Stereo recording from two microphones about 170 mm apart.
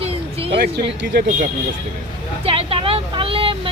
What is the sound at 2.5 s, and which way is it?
Vehicle, 35° right (ahead or behind).